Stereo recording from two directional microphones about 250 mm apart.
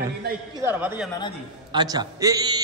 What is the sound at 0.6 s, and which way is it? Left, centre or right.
A man's voice, centre.